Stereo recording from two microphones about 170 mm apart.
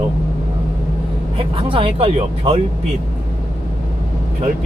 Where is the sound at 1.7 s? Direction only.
30° right (ahead or behind).